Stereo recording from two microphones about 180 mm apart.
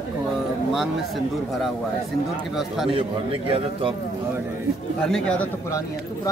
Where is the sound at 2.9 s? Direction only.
30° right (ahead or behind).